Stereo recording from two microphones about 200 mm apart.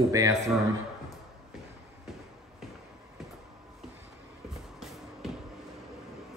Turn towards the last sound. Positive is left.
turn(degrees=0)  # may be behind; listen again after turning